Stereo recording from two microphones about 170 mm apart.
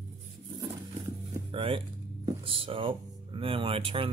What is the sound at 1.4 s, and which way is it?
Speech, 30° right (ahead or behind).